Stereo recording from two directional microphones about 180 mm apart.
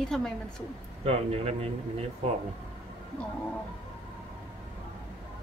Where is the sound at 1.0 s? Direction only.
35° right (ahead or behind).